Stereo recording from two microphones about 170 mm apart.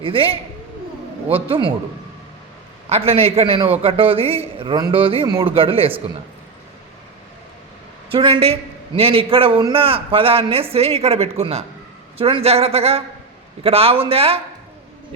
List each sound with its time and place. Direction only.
0.0 s a man's voice: 30° right (ahead or behind)
2.9 s a man's voice: 35° right (ahead or behind)
8.1 s a man's voice: 30° right (ahead or behind)